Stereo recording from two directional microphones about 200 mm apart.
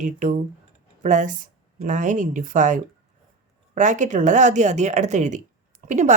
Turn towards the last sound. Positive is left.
turn(degrees=-35)  # may be behind; listen again after turning